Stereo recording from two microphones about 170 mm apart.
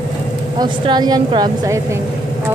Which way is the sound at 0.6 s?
25° right (ahead or behind).